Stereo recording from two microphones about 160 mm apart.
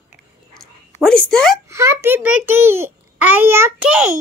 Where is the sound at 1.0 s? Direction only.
5° left (ahead or behind).